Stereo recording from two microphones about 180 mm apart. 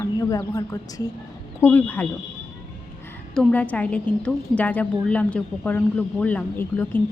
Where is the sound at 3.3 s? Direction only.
10° left (ahead or behind).